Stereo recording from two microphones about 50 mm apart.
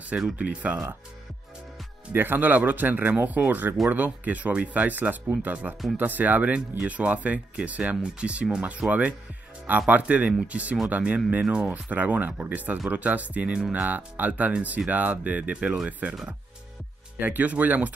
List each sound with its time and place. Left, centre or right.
0.4 s speech: right
2.1 s speech: right
13.5 s speech: right
13.8 s speech: right
17.2 s speech: right